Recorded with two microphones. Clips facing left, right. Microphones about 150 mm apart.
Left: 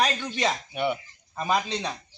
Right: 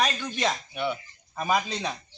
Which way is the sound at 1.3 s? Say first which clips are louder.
Even; 5° right (ahead or behind).